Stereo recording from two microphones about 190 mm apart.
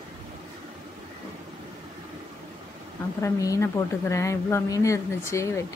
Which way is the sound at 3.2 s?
15° left (ahead or behind).